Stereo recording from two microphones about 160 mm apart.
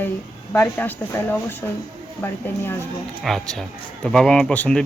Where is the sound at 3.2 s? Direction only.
Centre (ahead or behind).